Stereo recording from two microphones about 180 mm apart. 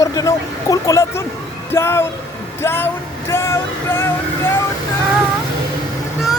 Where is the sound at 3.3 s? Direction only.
15° left (ahead or behind).